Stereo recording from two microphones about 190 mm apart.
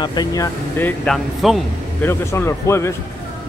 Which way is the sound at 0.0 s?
20° left (ahead or behind).